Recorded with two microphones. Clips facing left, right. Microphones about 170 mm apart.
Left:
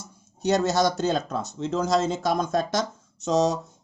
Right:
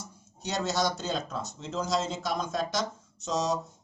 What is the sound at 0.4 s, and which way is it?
Speech, 50° left (ahead or behind).